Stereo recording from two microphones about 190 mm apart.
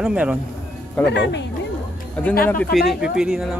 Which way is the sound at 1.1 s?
65° left (ahead or behind).